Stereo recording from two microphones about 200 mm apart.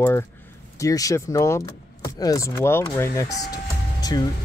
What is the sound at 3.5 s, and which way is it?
Vehicle, 20° left (ahead or behind).